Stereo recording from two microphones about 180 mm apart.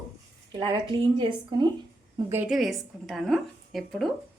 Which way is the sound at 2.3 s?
10° right (ahead or behind).